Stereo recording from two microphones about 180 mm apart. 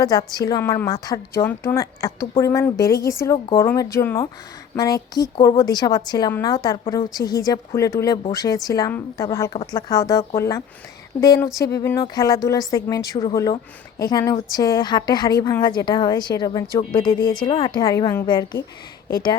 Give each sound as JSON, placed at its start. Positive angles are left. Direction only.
{"t": 0.0, "sound": "a woman's voice", "side_deg": 20}